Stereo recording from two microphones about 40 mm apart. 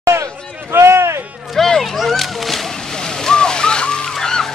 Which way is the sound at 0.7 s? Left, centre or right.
Right.